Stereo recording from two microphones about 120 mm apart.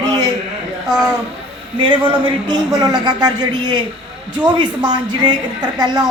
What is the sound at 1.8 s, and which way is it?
A woman's voice, 45° right (ahead or behind).